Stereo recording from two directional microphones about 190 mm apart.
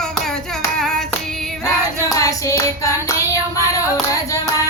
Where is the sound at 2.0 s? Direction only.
15° left (ahead or behind).